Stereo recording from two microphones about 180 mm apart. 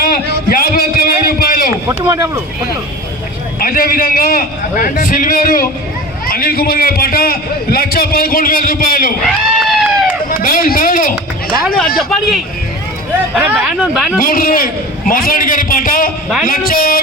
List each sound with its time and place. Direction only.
0.0 s a sound: 55° left (ahead or behind)
1.9 s speech: 15° right (ahead or behind)
3.6 s a man's voice: 55° left (ahead or behind)
9.2 s a sound: centre (ahead or behind)
10.2 s speech: 50° left (ahead or behind)
11.9 s speech: centre (ahead or behind)
14.2 s a man's voice: 50° left (ahead or behind)